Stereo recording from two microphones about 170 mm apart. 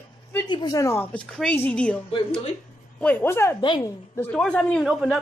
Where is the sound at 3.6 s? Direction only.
30° left (ahead or behind).